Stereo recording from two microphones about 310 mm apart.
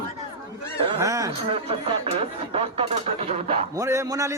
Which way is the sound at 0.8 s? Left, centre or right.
Centre.